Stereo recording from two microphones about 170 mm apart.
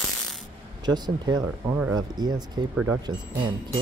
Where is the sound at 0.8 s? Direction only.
25° right (ahead or behind).